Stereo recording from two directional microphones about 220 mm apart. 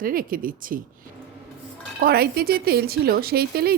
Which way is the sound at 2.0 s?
45° right (ahead or behind).